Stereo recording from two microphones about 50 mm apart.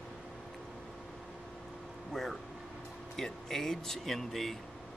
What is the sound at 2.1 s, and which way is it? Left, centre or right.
Speech, centre.